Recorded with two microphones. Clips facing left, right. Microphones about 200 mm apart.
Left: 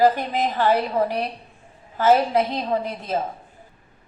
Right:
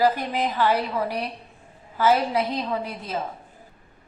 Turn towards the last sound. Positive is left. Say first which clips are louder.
# left 4 dB
turn(degrees=45)  # may be behind; listen again after turning